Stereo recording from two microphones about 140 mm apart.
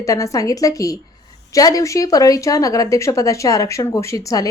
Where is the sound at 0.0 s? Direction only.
25° left (ahead or behind).